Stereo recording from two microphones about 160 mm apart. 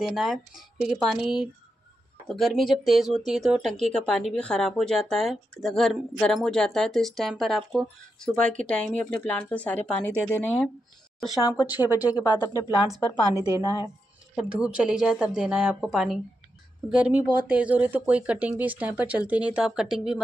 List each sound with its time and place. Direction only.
0.0 s speech: centre (ahead or behind)
2.2 s a woman's voice: centre (ahead or behind)
11.5 s speech: 10° right (ahead or behind)
12.1 s speech: 20° left (ahead or behind)
14.3 s speech: 5° right (ahead or behind)